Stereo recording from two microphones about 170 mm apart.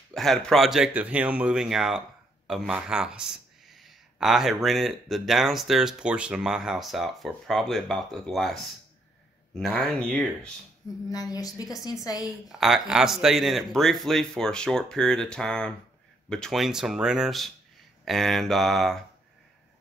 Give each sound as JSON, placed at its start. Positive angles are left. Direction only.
{"t": 0.1, "sound": "speech", "side_deg": 0}
{"t": 11.1, "sound": "a woman's voice", "side_deg": 20}
{"t": 12.3, "sound": "speech", "side_deg": 0}